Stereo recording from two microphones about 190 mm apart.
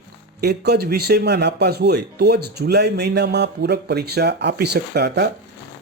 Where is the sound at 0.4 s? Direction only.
60° right (ahead or behind).